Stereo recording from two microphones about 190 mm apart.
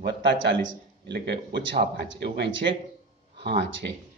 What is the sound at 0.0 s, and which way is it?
A man's voice, 70° right (ahead or behind).